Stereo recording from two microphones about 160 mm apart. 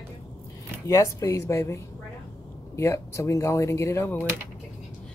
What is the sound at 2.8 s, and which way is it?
Speech, 20° left (ahead or behind).